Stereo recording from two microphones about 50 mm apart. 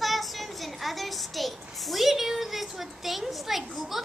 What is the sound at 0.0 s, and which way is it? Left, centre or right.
A child's voice, centre.